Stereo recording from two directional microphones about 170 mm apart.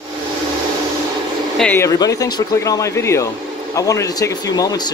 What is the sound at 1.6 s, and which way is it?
Speech, 10° left (ahead or behind).